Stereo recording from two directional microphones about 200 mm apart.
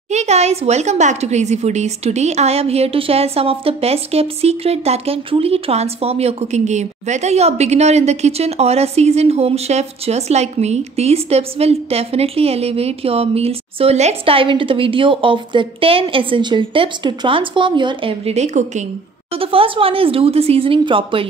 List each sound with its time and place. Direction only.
0.1 s speech: 35° right (ahead or behind)